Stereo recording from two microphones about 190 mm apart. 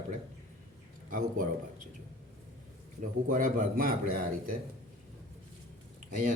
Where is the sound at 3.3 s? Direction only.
45° right (ahead or behind).